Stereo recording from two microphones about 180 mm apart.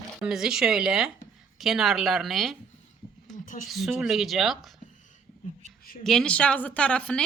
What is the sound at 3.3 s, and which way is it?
Speech, 45° left (ahead or behind).